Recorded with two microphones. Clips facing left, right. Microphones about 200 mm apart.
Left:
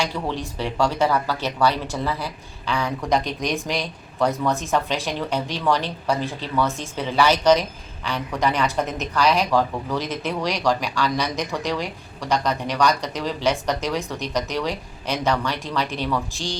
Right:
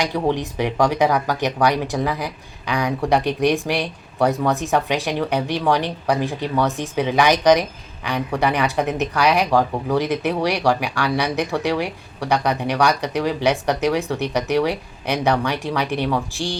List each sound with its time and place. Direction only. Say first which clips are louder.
0.3 s speech: right 4 dB; 15° right (ahead or behind)
16.3 s speech: right 4 dB; 15° left (ahead or behind)